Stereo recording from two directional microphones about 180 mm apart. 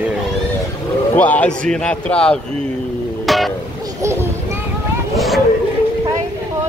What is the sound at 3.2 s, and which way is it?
Music, centre (ahead or behind).